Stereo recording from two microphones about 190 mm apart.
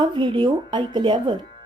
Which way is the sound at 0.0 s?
25° right (ahead or behind).